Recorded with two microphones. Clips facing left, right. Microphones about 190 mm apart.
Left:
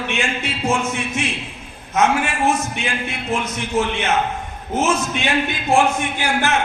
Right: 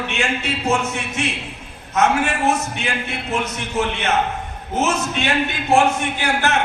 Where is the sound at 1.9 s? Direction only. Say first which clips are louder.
Even; 65° right (ahead or behind).